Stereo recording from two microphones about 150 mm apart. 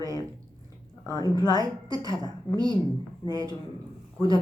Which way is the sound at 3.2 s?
25° right (ahead or behind).